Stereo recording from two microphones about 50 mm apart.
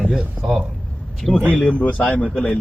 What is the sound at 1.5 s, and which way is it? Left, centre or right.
Speech, left.